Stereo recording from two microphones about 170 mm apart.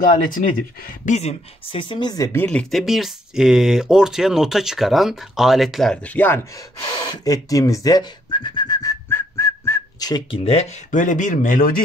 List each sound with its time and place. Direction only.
0.2 s speech: 50° left (ahead or behind)
1.0 s speech: 40° left (ahead or behind); by 2.4 s 20° left (ahead or behind)
2.4 s speech: 5° left (ahead or behind)
6.8 s speech: 25° left (ahead or behind)
9.1 s whistling: 15° left (ahead or behind)
10.4 s speech: 40° left (ahead or behind); by 11.8 s 55° left (ahead or behind)